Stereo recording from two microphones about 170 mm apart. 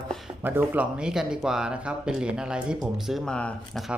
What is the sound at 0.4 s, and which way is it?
Speech, 10° right (ahead or behind).